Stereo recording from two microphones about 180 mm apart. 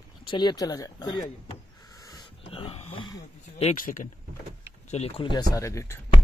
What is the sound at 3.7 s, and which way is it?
Speech, 50° left (ahead or behind).